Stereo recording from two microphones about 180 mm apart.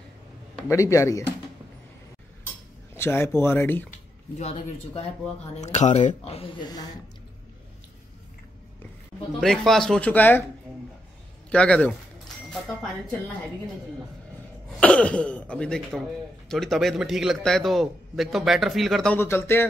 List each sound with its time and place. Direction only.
0.7 s speech: 15° left (ahead or behind)
3.0 s speech: 15° left (ahead or behind)
4.4 s speech: 35° left (ahead or behind)
9.4 s speech: centre (ahead or behind)
11.5 s speech: 5° left (ahead or behind)
14.8 s speech: 5° left (ahead or behind)
19.1 s speech: 10° left (ahead or behind)